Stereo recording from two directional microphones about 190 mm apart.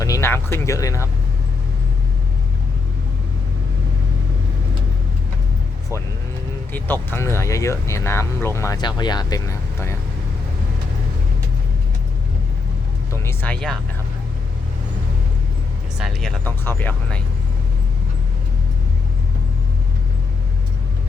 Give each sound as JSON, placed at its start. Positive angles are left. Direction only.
{"t": 0.0, "sound": "speech", "side_deg": 15}
{"t": 6.7, "sound": "speech", "side_deg": 10}
{"t": 13.2, "sound": "speech", "side_deg": 10}
{"t": 16.0, "sound": "speech", "side_deg": 0}